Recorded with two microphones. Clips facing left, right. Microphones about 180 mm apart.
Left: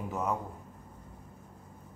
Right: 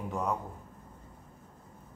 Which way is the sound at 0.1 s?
Centre (ahead or behind).